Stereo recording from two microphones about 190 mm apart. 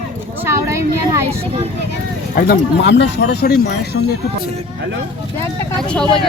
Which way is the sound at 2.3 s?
50° left (ahead or behind).